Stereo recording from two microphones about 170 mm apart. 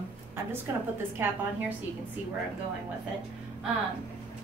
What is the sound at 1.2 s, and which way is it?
Speech, 15° right (ahead or behind).